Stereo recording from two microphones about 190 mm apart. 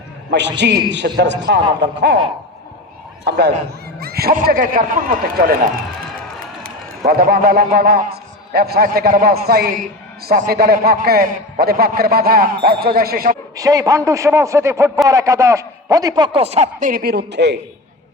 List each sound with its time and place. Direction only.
0.3 s a man's voice: 65° right (ahead or behind)
3.2 s a man's voice: 60° right (ahead or behind)
6.6 s a man's voice: 50° right (ahead or behind)
13.6 s a man's voice: 20° right (ahead or behind); by 16.9 s 35° right (ahead or behind)
16.9 s a man's voice: 55° right (ahead or behind)